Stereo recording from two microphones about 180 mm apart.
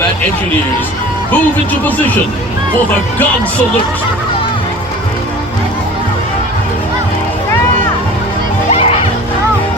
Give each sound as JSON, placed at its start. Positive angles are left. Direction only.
{"t": 8.7, "sound": "music", "side_deg": 35}